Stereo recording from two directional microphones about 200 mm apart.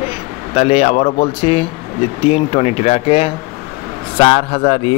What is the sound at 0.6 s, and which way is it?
A man's voice, 30° left (ahead or behind).